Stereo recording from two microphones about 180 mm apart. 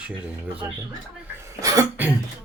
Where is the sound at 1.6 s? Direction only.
15° right (ahead or behind).